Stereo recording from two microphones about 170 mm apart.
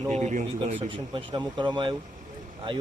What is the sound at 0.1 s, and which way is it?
Speech, 45° right (ahead or behind).